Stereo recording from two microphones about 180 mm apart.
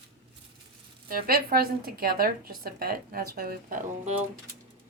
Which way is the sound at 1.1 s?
55° right (ahead or behind).